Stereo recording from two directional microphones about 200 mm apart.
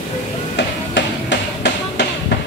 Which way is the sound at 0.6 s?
60° left (ahead or behind).